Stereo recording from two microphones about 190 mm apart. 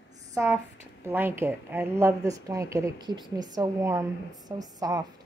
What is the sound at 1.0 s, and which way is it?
Speech, 10° right (ahead or behind).